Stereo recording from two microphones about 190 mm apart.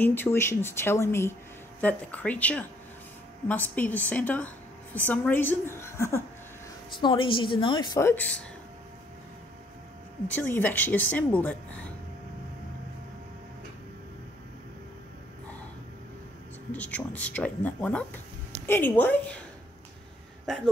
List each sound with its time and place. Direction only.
0.0 s speech: 10° left (ahead or behind)
7.0 s a woman's voice: 25° left (ahead or behind)
8.0 s speech: 10° left (ahead or behind)
10.3 s speech: 10° left (ahead or behind)
16.7 s speech: 10° left (ahead or behind)
20.4 s speech: centre (ahead or behind)